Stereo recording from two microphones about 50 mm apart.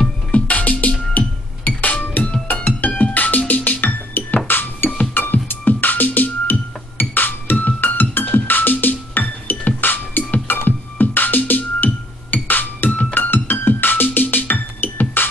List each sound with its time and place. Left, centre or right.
0.3 s music: left